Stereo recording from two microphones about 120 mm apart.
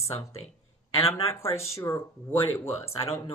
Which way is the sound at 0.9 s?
50° left (ahead or behind).